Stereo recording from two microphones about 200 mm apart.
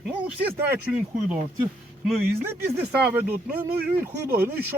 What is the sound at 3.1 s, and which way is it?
Speech, 10° right (ahead or behind).